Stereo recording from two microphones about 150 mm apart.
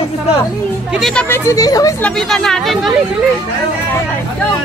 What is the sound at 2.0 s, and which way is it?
Speech, 5° left (ahead or behind).